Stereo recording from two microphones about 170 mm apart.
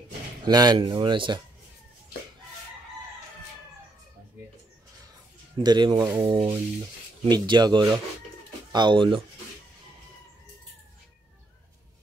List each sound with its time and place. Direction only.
0.5 s speech: 25° right (ahead or behind)
5.6 s speech: 25° right (ahead or behind)